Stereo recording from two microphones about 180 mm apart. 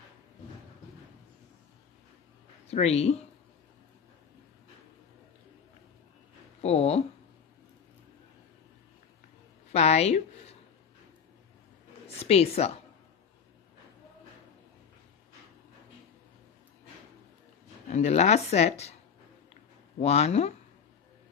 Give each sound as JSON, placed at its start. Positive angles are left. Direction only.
{"t": 2.7, "sound": "speech", "side_deg": 35}
{"t": 6.6, "sound": "speech", "side_deg": 35}
{"t": 9.7, "sound": "a sound", "side_deg": 35}
{"t": 12.2, "sound": "speech", "side_deg": 35}
{"t": 17.9, "sound": "speech", "side_deg": 40}
{"t": 20.0, "sound": "speech", "side_deg": 35}